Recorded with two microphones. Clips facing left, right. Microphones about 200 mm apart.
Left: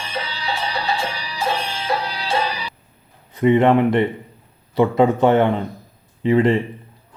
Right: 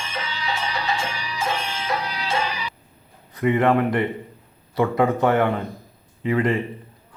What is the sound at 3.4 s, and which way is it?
Speech, 25° left (ahead or behind).